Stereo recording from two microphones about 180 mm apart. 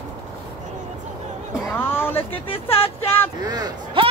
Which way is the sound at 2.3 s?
30° left (ahead or behind).